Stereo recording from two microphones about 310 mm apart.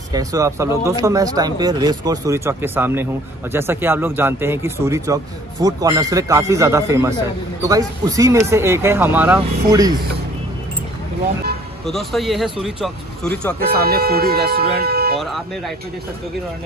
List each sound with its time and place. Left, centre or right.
0.1 s speech: centre
11.8 s speech: centre
13.6 s speech: right
15.1 s speech: centre